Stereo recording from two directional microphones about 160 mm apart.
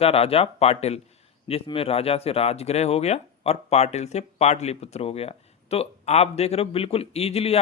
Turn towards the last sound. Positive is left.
turn(degrees=40)  # may be behind; listen again after turning